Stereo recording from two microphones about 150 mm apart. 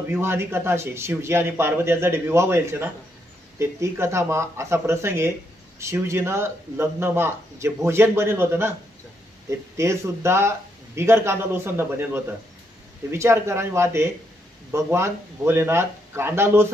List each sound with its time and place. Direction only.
0.1 s speech: 15° right (ahead or behind)